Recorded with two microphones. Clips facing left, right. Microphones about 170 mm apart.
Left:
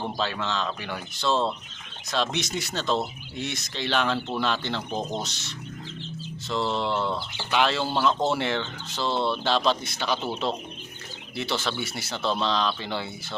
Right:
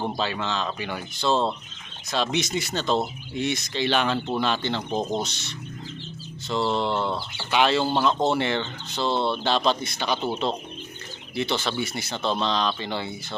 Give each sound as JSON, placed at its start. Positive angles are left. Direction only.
{"t": 0.2, "sound": "speech", "side_deg": 0}